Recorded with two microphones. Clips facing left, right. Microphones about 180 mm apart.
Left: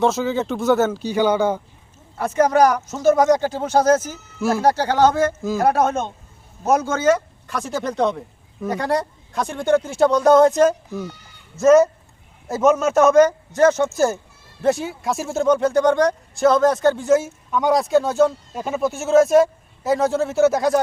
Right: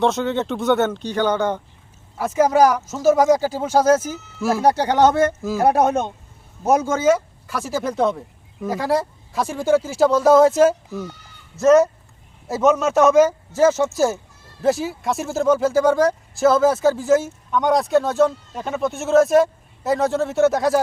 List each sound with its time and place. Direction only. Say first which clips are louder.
0.0 s speech: even; centre (ahead or behind)
2.1 s speech: even; 5° right (ahead or behind)
4.6 s speech: right 1 dB; 15° right (ahead or behind)
5.4 s speech: even; 5° right (ahead or behind)
5.6 s speech: right 2 dB; 15° right (ahead or behind); by 20.7 s centre (ahead or behind)